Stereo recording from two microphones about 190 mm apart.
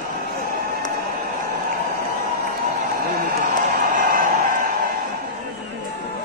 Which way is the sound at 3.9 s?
50° right (ahead or behind).